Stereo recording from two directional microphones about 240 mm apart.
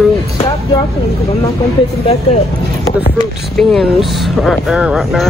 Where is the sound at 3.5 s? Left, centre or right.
Centre.